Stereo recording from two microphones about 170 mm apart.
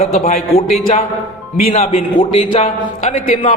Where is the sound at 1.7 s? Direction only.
35° left (ahead or behind).